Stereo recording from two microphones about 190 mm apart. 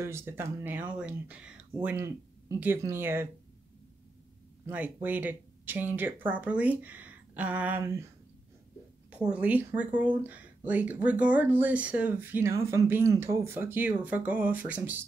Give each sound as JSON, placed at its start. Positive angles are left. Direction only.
{"t": 0.0, "sound": "speech", "side_deg": -15}
{"t": 4.6, "sound": "speech", "side_deg": -10}
{"t": 9.3, "sound": "speech", "side_deg": -10}